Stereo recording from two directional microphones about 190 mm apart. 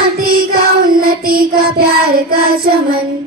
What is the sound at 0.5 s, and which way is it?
Child singing, 50° right (ahead or behind).